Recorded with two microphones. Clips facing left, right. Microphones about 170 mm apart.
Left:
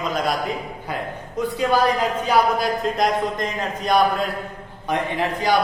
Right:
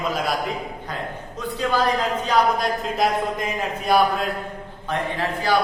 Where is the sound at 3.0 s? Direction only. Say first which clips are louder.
Right 1 dB; 5° right (ahead or behind).